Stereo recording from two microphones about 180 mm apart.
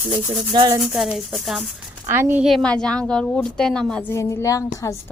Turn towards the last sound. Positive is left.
turn(degrees=15)  # may be behind; listen again after turning